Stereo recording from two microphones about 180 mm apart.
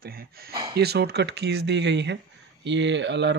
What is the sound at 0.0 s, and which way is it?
Speech, 55° right (ahead or behind).